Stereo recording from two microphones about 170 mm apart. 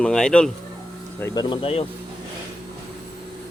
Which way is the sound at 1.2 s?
25° left (ahead or behind).